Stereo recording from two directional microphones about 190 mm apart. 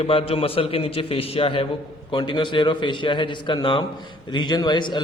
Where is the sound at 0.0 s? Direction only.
30° left (ahead or behind).